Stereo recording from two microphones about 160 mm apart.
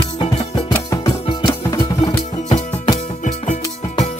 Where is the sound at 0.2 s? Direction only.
30° left (ahead or behind).